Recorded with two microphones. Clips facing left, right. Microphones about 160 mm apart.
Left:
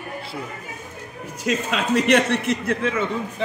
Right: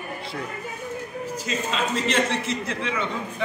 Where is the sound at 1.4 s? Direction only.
65° left (ahead or behind); by 3.0 s 50° left (ahead or behind).